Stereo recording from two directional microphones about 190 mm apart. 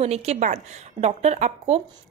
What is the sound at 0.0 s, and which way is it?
Speech, 35° right (ahead or behind).